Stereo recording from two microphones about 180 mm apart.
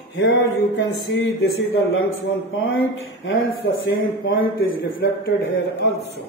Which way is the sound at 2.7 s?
90° left.